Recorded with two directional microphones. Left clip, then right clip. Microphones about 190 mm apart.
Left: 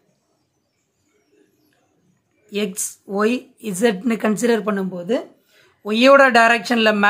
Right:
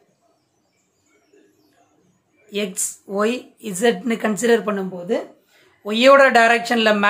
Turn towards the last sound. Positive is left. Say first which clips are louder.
# even
turn(degrees=20)  # may be behind; listen again after turning